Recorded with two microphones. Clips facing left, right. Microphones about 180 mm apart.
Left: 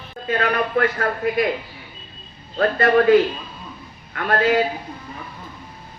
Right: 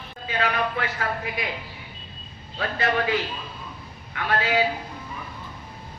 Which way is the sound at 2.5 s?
50° left (ahead or behind).